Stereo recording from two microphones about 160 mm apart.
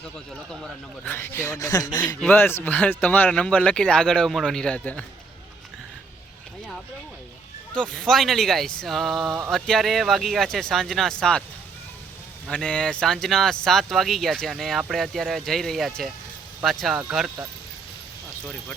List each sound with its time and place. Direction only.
1.0 s speech: 15° left (ahead or behind)
7.7 s speech: 5° left (ahead or behind)
12.5 s speech: 5° left (ahead or behind)